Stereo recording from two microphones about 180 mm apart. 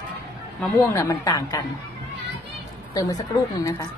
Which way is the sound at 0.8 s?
15° left (ahead or behind).